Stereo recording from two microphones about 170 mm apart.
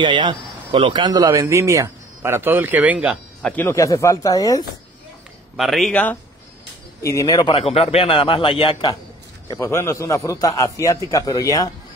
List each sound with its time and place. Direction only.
0.0 s speech: 25° right (ahead or behind); by 3.2 s 10° right (ahead or behind)
3.4 s speech: 10° left (ahead or behind)
5.6 s a man's voice: centre (ahead or behind)
7.0 s a man's voice: 20° left (ahead or behind)
9.5 s a man's voice: 15° left (ahead or behind)